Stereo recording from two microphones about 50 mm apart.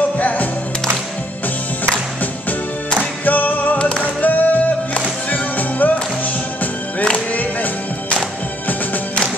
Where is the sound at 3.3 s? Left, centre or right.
Left.